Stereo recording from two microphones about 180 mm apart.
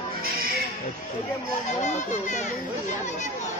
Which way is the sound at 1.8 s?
40° left (ahead or behind).